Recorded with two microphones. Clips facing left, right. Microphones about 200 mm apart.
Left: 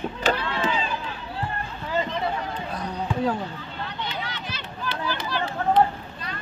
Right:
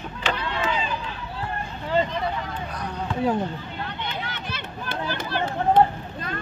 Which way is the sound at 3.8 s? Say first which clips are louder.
Left 2 dB; 55° right (ahead or behind).